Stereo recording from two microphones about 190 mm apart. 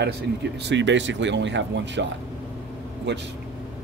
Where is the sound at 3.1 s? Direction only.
65° right (ahead or behind).